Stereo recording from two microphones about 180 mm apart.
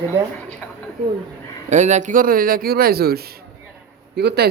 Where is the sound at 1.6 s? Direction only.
40° right (ahead or behind).